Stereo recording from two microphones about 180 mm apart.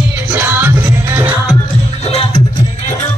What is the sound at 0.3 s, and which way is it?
Music, 10° right (ahead or behind).